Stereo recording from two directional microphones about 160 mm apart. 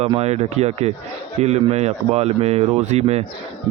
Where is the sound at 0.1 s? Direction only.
40° right (ahead or behind).